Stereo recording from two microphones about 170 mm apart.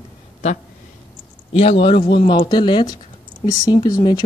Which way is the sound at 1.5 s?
35° left (ahead or behind).